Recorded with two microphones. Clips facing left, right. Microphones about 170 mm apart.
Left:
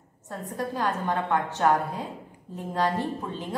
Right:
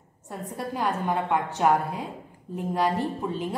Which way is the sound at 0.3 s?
15° right (ahead or behind).